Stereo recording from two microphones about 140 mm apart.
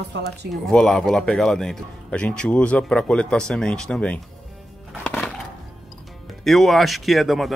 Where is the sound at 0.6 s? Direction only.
5° left (ahead or behind).